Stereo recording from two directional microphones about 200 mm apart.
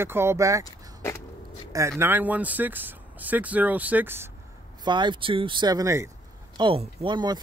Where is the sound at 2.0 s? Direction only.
10° right (ahead or behind).